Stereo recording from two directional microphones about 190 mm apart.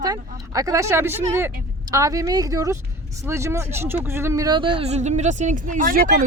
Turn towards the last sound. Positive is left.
turn(degrees=-45)  # may be behind; listen again after turning